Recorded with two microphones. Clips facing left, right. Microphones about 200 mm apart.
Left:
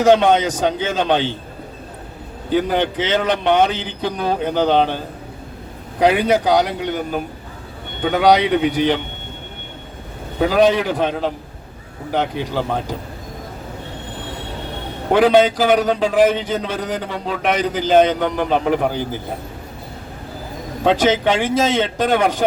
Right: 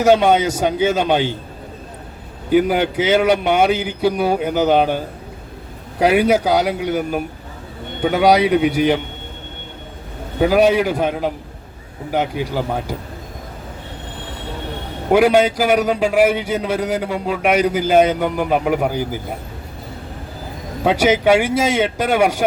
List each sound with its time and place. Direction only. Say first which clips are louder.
0.0 s a man's voice: even; 10° right (ahead or behind)
2.5 s a man's voice: right 3 dB; 10° right (ahead or behind)
6.0 s a man's voice: right 1 dB; 10° right (ahead or behind)
10.5 s a man's voice: right 1 dB; 10° right (ahead or behind)
15.1 s a man's voice: even; 10° right (ahead or behind)
20.8 s a man's voice: right 1 dB; 10° right (ahead or behind)